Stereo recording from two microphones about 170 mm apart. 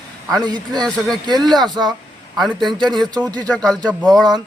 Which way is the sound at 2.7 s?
25° right (ahead or behind).